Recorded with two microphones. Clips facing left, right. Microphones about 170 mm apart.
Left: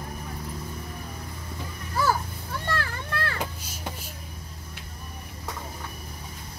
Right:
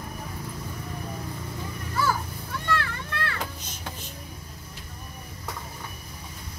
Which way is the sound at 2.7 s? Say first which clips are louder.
Right 2 dB; 35° left (ahead or behind).